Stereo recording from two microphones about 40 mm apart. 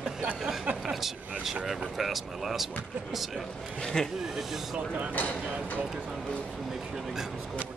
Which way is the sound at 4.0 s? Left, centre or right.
Centre.